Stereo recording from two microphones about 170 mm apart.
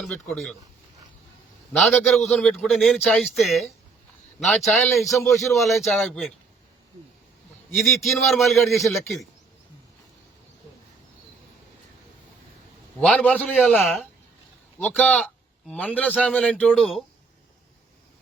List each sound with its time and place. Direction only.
0.0 s a man's voice: 5° left (ahead or behind)
1.7 s a man's voice: centre (ahead or behind)
5.1 s a man's voice: 15° left (ahead or behind)
5.4 s a man's voice: centre (ahead or behind)
7.8 s a man's voice: centre (ahead or behind)
13.0 s a man's voice: 5° left (ahead or behind)